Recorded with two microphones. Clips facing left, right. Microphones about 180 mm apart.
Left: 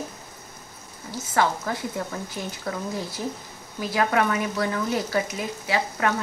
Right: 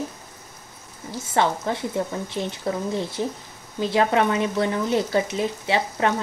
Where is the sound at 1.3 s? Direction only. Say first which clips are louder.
Right 2 dB; 25° right (ahead or behind).